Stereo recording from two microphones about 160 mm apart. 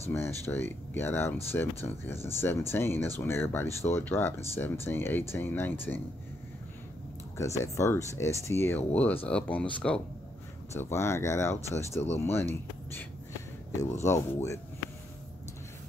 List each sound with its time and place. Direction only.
0.1 s speech: 15° left (ahead or behind)
7.3 s speech: 20° left (ahead or behind)
13.7 s speech: 15° left (ahead or behind)